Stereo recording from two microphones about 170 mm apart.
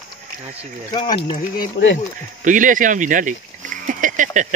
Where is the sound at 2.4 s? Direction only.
50° right (ahead or behind).